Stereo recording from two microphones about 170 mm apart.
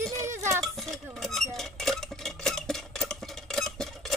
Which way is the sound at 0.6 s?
Centre (ahead or behind).